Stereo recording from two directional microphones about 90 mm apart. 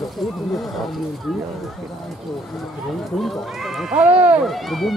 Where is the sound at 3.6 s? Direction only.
5° right (ahead or behind).